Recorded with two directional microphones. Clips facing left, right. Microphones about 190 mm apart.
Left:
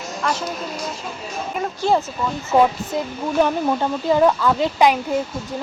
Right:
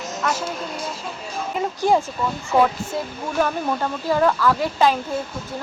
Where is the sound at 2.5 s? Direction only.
15° left (ahead or behind).